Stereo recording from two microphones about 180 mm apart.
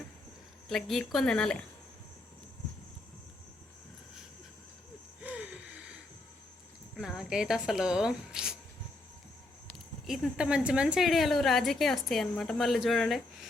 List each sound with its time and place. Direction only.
0.7 s a woman's voice: centre (ahead or behind)
5.2 s gasp: 5° right (ahead or behind)
6.9 s a woman's voice: centre (ahead or behind)
10.1 s a woman's voice: 5° right (ahead or behind)